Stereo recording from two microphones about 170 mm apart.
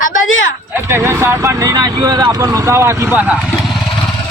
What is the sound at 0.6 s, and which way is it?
Speech, 15° right (ahead or behind).